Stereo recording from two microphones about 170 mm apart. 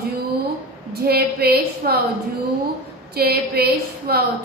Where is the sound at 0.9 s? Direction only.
65° right (ahead or behind).